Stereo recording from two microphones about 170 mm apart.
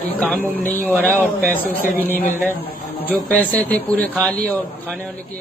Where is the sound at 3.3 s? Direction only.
10° left (ahead or behind).